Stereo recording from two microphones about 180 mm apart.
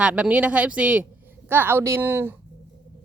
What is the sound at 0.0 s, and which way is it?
Speech, 5° right (ahead or behind).